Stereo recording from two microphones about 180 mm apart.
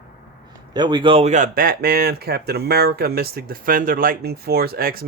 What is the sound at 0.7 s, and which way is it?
Speech, 25° right (ahead or behind).